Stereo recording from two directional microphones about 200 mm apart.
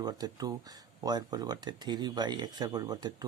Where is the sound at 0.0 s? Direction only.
20° right (ahead or behind).